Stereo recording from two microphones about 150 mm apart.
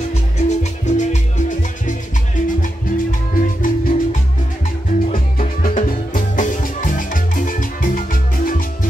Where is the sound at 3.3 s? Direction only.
70° left (ahead or behind).